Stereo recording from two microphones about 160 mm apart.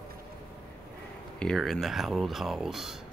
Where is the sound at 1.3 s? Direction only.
5° left (ahead or behind).